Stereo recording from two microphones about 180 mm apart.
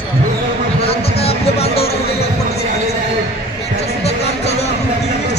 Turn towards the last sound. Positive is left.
turn(degrees=35)  # may be behind; listen again after turning